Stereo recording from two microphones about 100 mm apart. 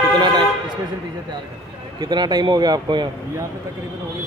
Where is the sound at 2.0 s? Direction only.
45° right (ahead or behind).